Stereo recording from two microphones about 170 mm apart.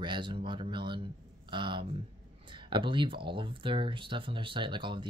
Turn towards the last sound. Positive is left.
turn(degrees=-30)  # may be behind; listen again after turning